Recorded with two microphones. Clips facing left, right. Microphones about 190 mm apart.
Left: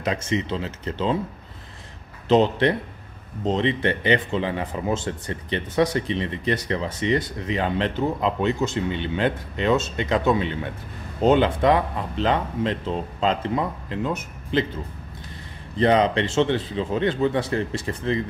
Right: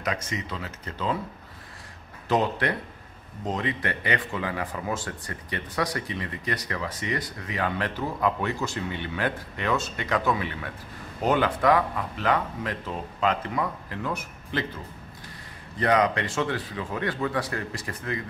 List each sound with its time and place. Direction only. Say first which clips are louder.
0.0 s speech: left 6 dB; 25° left (ahead or behind)
2.2 s speech: left 7 dB; 25° left (ahead or behind)
15.8 s speech: left 4 dB; 25° left (ahead or behind)